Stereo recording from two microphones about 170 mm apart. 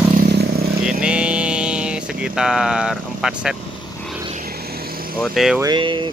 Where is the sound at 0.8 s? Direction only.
5° right (ahead or behind).